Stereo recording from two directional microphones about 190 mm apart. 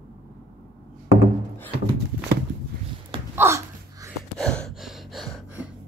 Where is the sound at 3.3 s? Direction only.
15° right (ahead or behind).